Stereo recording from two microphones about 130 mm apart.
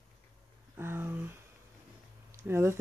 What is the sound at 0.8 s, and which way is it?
Speech, 15° right (ahead or behind).